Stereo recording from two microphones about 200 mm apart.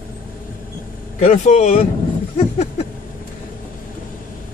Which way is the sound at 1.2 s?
35° left (ahead or behind).